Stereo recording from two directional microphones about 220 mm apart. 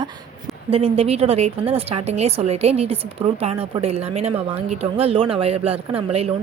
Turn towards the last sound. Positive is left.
turn(degrees=-30)  # may be behind; listen again after turning